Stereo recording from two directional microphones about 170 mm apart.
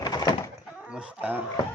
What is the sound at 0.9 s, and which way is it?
Speech, 5° right (ahead or behind).